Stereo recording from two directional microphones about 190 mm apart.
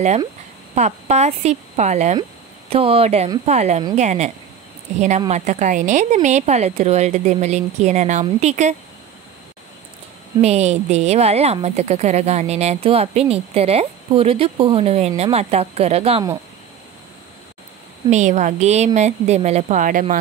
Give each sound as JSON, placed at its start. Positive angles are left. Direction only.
{"t": 0.7, "sound": "a woman's voice", "side_deg": -35}
{"t": 5.3, "sound": "a woman's voice", "side_deg": -40}
{"t": 10.4, "sound": "a woman's voice", "side_deg": -35}
{"t": 18.1, "sound": "a woman's voice", "side_deg": -40}